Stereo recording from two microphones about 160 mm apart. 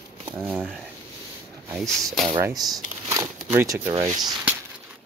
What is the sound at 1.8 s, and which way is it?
Speech, centre (ahead or behind).